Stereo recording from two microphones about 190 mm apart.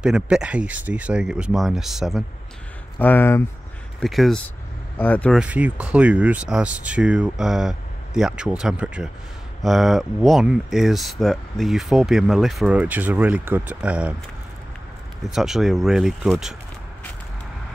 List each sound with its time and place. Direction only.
0.0 s speech: 5° right (ahead or behind)
3.0 s speech: 10° left (ahead or behind)
4.0 s speech: centre (ahead or behind)
5.4 s speech: 5° right (ahead or behind)
15.2 s speech: centre (ahead or behind)